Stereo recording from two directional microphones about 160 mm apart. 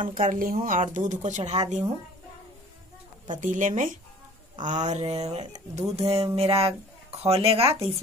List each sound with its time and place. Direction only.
0.1 s speech: 55° right (ahead or behind)
3.3 s speech: 50° right (ahead or behind)
5.8 s music: 40° right (ahead or behind)